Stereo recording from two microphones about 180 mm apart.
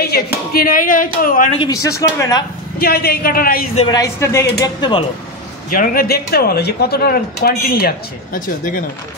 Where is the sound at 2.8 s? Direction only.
60° left (ahead or behind).